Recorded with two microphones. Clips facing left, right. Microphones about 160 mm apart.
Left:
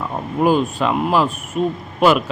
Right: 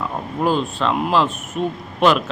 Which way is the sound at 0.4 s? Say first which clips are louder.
Left 3 dB; 10° left (ahead or behind).